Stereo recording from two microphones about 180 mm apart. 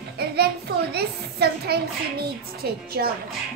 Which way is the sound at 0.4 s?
65° right (ahead or behind).